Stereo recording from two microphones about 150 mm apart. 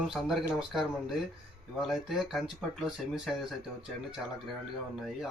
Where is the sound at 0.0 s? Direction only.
Centre (ahead or behind).